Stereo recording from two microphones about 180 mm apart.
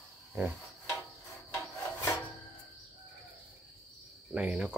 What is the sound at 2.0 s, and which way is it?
Filing, 15° left (ahead or behind).